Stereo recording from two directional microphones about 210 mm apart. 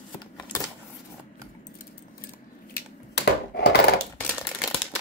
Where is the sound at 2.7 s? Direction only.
50° left (ahead or behind).